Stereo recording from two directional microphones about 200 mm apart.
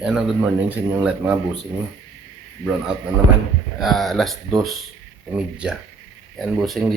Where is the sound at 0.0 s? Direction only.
5° right (ahead or behind).